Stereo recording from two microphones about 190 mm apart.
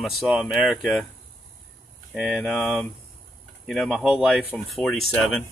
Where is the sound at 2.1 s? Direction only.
5° right (ahead or behind).